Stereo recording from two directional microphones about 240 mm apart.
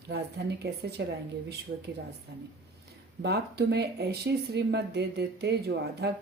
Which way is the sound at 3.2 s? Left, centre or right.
Right.